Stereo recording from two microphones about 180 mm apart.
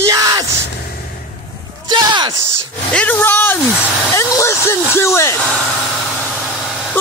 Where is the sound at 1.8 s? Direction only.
25° right (ahead or behind).